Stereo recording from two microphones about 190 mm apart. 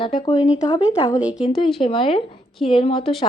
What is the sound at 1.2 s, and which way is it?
Speech, 5° right (ahead or behind).